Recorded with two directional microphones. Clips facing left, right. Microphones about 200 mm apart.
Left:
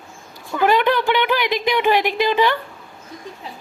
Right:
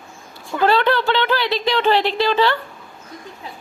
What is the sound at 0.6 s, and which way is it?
Speech, 15° left (ahead or behind).